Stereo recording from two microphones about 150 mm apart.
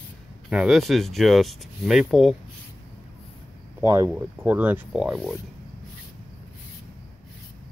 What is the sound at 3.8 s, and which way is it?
Speech, 20° right (ahead or behind).